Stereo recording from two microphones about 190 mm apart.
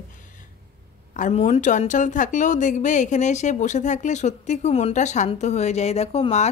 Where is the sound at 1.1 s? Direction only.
40° left (ahead or behind).